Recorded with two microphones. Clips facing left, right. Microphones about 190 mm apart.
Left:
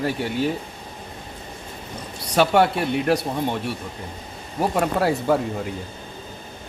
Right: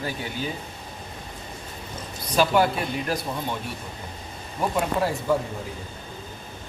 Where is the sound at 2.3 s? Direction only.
70° left (ahead or behind).